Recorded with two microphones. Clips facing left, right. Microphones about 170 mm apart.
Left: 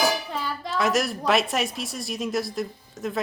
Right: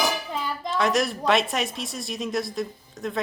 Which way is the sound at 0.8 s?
Centre (ahead or behind).